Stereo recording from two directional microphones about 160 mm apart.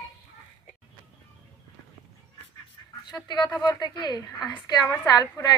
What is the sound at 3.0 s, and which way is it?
A woman's voice, 25° left (ahead or behind).